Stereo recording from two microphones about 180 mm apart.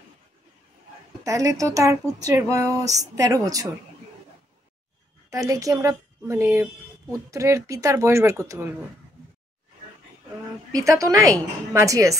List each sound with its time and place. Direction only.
1.2 s a woman's voice: 20° right (ahead or behind)
5.3 s a woman's voice: 20° right (ahead or behind)
10.7 s a woman's voice: 20° right (ahead or behind)